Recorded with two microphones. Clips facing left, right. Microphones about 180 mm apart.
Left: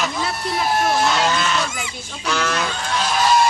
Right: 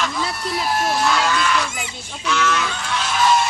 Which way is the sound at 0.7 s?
25° left (ahead or behind).